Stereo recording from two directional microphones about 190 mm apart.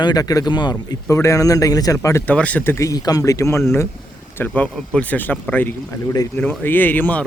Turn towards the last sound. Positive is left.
turn(degrees=10)  # may be behind; listen again after turning